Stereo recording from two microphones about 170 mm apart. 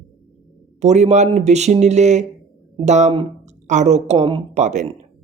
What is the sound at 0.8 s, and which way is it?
A woman's voice, 40° right (ahead or behind).